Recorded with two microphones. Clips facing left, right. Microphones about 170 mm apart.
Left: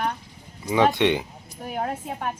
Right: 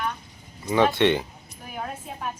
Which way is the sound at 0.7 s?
15° left (ahead or behind).